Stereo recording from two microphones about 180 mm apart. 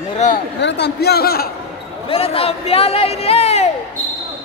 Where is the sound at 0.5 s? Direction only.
70° left (ahead or behind).